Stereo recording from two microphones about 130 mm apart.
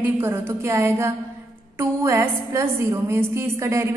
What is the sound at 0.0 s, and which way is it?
A woman's voice, 20° right (ahead or behind).